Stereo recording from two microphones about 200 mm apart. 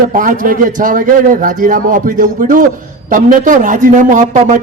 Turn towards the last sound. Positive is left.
turn(degrees=-40)  # may be behind; listen again after turning